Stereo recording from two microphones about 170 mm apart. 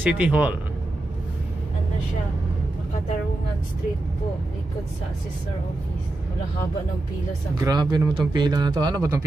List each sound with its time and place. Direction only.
0.0 s speech: 10° right (ahead or behind)
7.6 s a man's voice: 25° right (ahead or behind)